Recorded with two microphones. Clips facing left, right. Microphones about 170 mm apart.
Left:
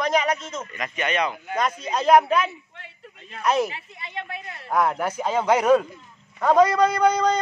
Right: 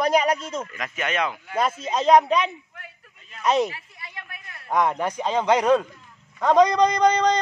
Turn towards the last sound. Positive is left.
turn(degrees=5)  # may be behind; listen again after turning